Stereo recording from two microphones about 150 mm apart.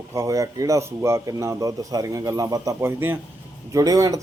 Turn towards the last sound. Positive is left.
turn(degrees=-25)  # may be behind; listen again after turning